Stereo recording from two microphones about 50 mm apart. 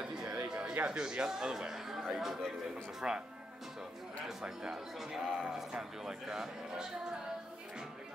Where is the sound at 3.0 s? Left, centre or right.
Right.